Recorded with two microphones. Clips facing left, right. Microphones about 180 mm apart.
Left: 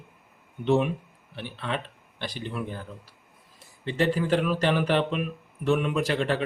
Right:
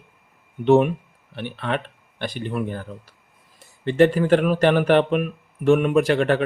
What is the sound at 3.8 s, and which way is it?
Speech, 60° right (ahead or behind).